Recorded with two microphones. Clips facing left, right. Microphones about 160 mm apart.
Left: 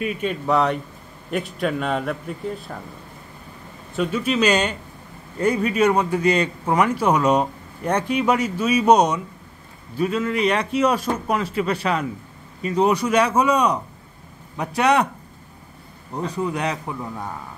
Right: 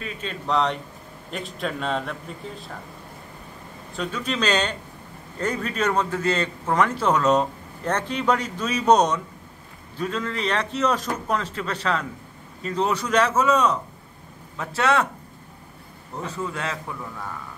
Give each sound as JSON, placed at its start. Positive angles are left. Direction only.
{"t": 0.0, "sound": "a man's voice", "side_deg": 10}
{"t": 3.9, "sound": "a man's voice", "side_deg": 5}
{"t": 16.3, "sound": "a man's voice", "side_deg": 15}